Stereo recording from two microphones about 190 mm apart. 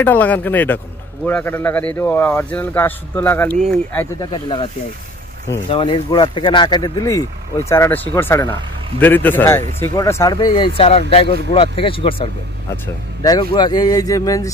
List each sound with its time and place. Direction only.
0.0 s speech: 10° left (ahead or behind)
4.2 s speech: 25° left (ahead or behind)
5.7 s speech: 30° left (ahead or behind)